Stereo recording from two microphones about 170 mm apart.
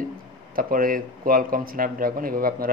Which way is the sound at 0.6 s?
55° right (ahead or behind).